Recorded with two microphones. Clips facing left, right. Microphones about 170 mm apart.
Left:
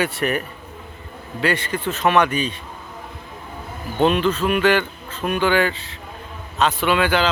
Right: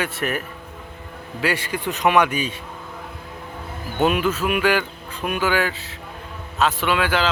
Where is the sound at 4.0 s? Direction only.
10° right (ahead or behind).